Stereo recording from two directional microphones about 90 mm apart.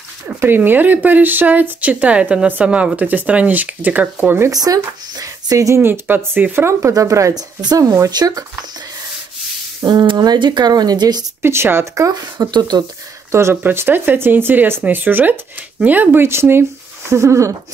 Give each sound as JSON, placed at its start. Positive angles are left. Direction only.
{"t": 0.4, "sound": "speech", "side_deg": -25}
{"t": 4.5, "sound": "speech", "side_deg": -40}
{"t": 5.8, "sound": "speech", "side_deg": -25}
{"t": 8.1, "sound": "speech", "side_deg": -50}
{"t": 9.8, "sound": "speech", "side_deg": -50}
{"t": 11.4, "sound": "speech", "side_deg": -25}
{"t": 12.1, "sound": "speech", "side_deg": -50}
{"t": 13.3, "sound": "speech", "side_deg": -30}